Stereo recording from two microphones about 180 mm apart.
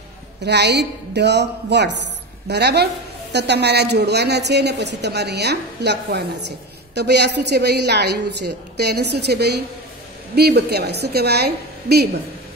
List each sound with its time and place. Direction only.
0.4 s a woman's voice: 70° right (ahead or behind)